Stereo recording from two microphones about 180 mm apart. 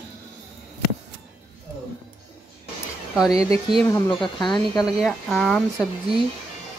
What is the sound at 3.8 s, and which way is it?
Speech, 15° left (ahead or behind).